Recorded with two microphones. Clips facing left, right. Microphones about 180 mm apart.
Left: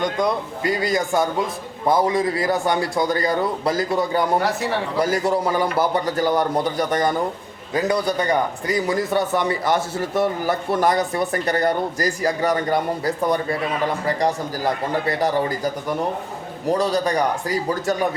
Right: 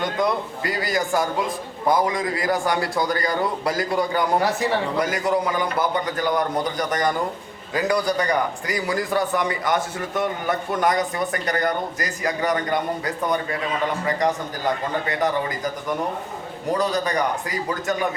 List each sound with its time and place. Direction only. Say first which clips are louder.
0.0 s speech: left 1 dB; 20° left (ahead or behind)
4.4 s speech: even; centre (ahead or behind)
4.9 s a man's voice: left 2 dB; 30° left (ahead or behind)
14.6 s a man's voice: left 3 dB; 35° left (ahead or behind)